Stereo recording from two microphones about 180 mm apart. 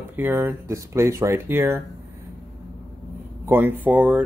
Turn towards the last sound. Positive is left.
turn(degrees=-10)  # may be behind; listen again after turning